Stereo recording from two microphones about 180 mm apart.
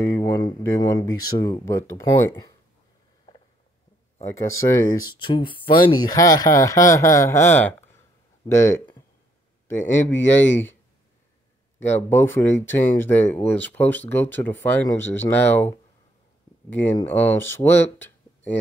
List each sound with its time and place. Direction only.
0.0 s speech: 15° left (ahead or behind)
4.2 s speech: 15° left (ahead or behind)
11.8 s speech: 10° left (ahead or behind)
16.7 s speech: 10° left (ahead or behind)
17.9 s a sound: 10° left (ahead or behind)